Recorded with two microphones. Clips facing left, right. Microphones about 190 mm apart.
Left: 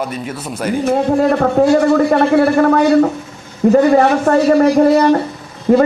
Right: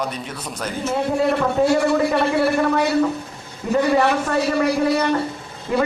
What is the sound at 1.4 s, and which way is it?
A man's voice, 55° left (ahead or behind).